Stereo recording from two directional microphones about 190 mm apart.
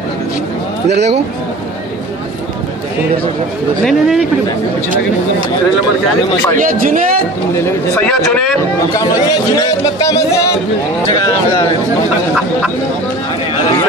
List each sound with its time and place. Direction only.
3.8 s a man's voice: centre (ahead or behind)
6.5 s a man's voice: 45° right (ahead or behind)
8.0 s a man's voice: 5° left (ahead or behind)
8.9 s a man's voice: 20° left (ahead or behind)